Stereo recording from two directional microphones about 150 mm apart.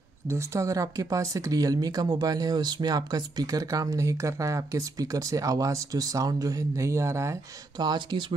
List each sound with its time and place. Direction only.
0.3 s speech: 20° right (ahead or behind)
7.8 s speech: 30° right (ahead or behind)